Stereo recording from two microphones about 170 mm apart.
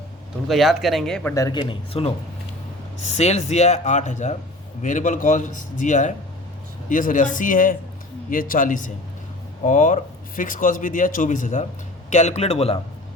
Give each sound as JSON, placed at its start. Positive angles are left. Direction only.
{"t": 0.4, "sound": "speech", "side_deg": 0}
{"t": 1.3, "sound": "a man's voice", "side_deg": 20}